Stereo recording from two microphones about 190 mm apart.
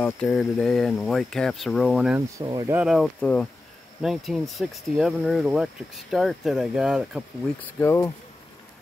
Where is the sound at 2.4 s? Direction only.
20° right (ahead or behind).